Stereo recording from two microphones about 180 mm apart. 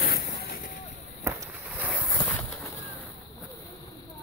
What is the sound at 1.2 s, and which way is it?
Boat, 10° right (ahead or behind).